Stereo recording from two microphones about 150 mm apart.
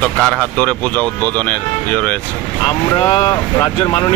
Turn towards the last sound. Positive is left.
turn(degrees=40)  # may be behind; listen again after turning